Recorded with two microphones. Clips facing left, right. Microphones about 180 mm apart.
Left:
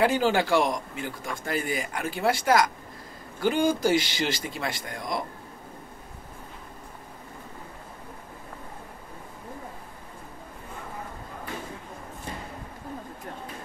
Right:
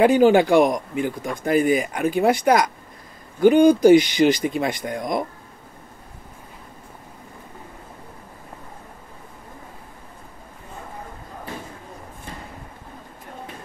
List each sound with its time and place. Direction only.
0.0 s speech: 15° right (ahead or behind)